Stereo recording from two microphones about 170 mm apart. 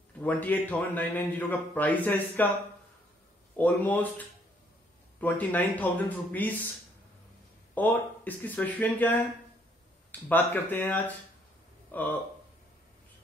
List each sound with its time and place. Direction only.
0.2 s a man's voice: 10° left (ahead or behind)
3.5 s a man's voice: 10° left (ahead or behind)
7.7 s a man's voice: 10° left (ahead or behind)